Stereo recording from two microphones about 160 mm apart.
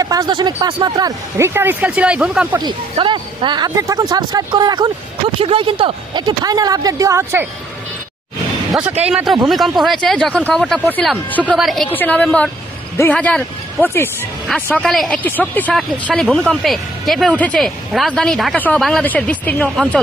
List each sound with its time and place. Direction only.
0.0 s speech: 25° right (ahead or behind); by 2.6 s 5° right (ahead or behind)
2.9 s a woman's voice: 30° right (ahead or behind)
8.8 s speech: 10° right (ahead or behind); by 11.5 s 10° left (ahead or behind)
11.5 s speech: centre (ahead or behind)
11.9 s speech: 10° left (ahead or behind)